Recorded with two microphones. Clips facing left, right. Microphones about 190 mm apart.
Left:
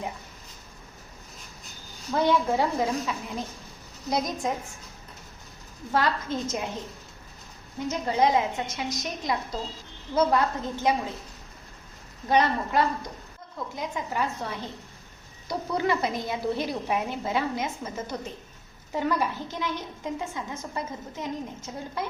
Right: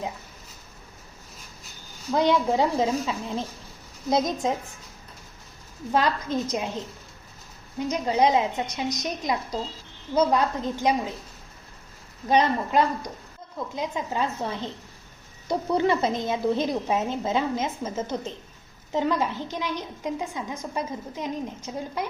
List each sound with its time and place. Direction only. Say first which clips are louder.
2.1 s a woman's voice: right 2 dB; 15° right (ahead or behind)
5.9 s a woman's voice: right 2 dB; 20° right (ahead or behind)
7.8 s a woman's voice: right 2 dB; 20° right (ahead or behind)
12.3 s a woman's voice: right 2 dB; 20° right (ahead or behind)